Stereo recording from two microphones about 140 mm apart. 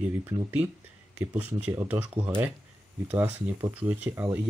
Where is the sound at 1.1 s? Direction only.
10° right (ahead or behind).